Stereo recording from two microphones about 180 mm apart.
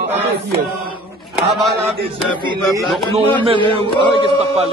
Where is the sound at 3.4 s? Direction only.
30° right (ahead or behind).